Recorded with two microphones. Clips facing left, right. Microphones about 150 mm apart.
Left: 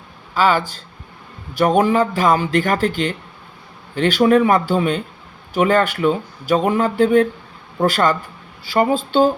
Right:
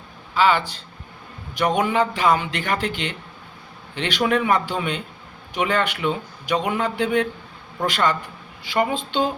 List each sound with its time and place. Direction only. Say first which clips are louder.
0.3 s speech: left 2 dB; 45° left (ahead or behind)